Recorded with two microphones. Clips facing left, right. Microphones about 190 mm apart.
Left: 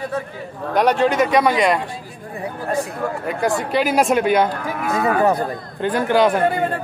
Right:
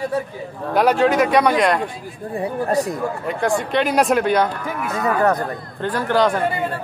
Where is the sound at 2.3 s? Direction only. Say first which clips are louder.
Right 3 dB; 35° right (ahead or behind).